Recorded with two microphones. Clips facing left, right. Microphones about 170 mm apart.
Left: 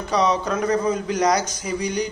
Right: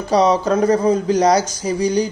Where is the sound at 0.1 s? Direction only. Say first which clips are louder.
Right 6 dB; 35° right (ahead or behind).